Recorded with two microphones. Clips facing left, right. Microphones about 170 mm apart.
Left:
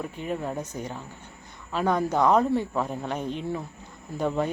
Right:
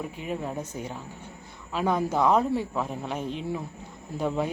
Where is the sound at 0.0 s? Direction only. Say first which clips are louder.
Left 1 dB; 5° right (ahead or behind).